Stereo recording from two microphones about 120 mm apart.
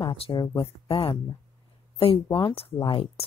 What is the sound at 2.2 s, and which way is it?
Speech, 35° left (ahead or behind).